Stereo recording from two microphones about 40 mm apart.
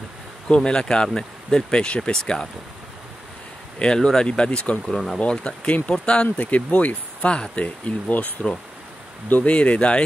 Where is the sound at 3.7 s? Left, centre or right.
Left.